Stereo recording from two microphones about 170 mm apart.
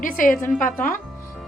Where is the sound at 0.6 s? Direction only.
50° left (ahead or behind).